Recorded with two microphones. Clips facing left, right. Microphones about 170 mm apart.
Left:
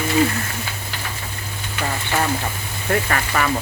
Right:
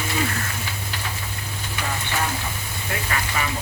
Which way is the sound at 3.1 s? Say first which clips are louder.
Left 5 dB; 60° left (ahead or behind).